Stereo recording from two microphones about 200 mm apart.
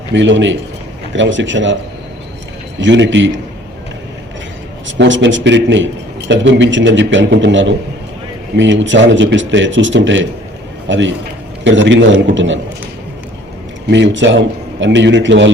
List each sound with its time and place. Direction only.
0.1 s speech: 65° right (ahead or behind)
2.8 s a man's voice: 65° right (ahead or behind)
4.9 s a man's voice: 65° right (ahead or behind)
13.8 s a man's voice: 65° right (ahead or behind)